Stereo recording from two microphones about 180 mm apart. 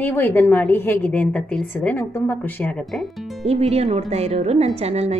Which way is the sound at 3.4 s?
35° right (ahead or behind).